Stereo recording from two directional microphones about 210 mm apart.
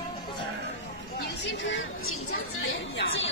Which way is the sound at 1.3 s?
60° left (ahead or behind).